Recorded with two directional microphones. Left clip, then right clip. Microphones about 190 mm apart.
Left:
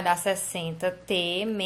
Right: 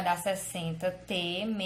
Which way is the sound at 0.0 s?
25° left (ahead or behind).